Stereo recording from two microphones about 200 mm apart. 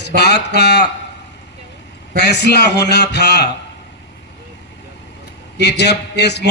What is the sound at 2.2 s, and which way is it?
Speech, 55° left (ahead or behind).